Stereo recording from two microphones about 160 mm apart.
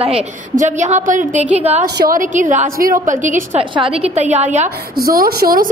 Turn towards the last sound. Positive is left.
turn(degrees=-65)  # may be behind; listen again after turning